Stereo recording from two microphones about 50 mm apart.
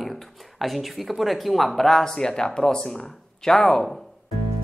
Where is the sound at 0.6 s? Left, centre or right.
Centre.